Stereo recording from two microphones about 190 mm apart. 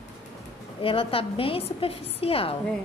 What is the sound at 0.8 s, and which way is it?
A woman's voice, 30° left (ahead or behind).